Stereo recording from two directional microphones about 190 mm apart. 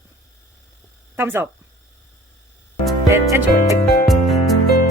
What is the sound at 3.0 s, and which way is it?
Music, 15° right (ahead or behind).